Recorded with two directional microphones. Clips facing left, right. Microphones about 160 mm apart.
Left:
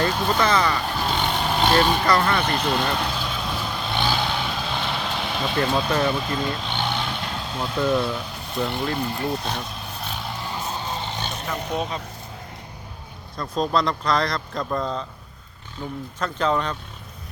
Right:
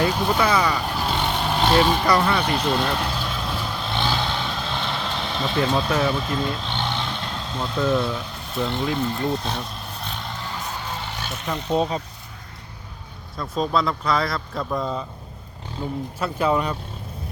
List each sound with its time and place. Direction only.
0.0 s speech: 5° right (ahead or behind)
2.6 s vehicle: centre (ahead or behind); by 11.3 s 20° left (ahead or behind)
11.7 s speech: 25° right (ahead or behind)
13.3 s speech: 5° right (ahead or behind)
16.2 s speech: 10° right (ahead or behind)